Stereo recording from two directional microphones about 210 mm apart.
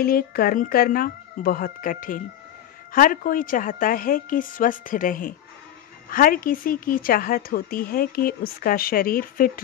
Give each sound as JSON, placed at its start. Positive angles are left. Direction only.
{"t": 0.0, "sound": "a woman's voice", "side_deg": 45}